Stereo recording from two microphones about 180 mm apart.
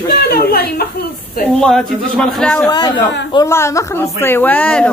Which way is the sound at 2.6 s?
25° left (ahead or behind).